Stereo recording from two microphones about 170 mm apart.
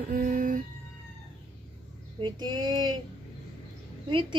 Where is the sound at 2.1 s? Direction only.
25° right (ahead or behind).